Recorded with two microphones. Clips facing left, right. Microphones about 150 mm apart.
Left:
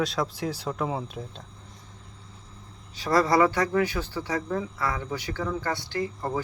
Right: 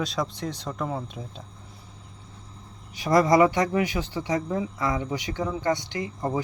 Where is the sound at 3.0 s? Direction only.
15° right (ahead or behind).